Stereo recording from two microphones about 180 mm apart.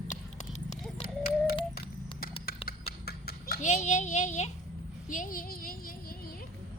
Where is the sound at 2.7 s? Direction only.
60° left (ahead or behind).